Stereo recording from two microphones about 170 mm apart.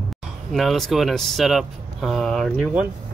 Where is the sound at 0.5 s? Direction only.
Centre (ahead or behind).